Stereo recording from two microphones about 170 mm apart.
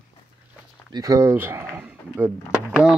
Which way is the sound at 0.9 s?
20° right (ahead or behind).